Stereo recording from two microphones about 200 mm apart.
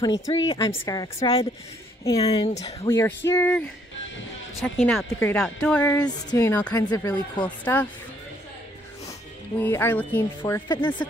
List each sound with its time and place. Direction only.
0.3 s a woman's voice: 20° left (ahead or behind)
2.9 s a woman's voice: 15° left (ahead or behind)
7.4 s a woman's voice: 5° left (ahead or behind)
9.6 s a woman's voice: 10° left (ahead or behind)